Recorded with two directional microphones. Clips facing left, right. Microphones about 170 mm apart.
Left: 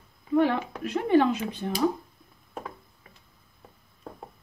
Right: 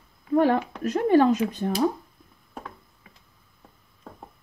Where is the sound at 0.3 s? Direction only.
45° right (ahead or behind).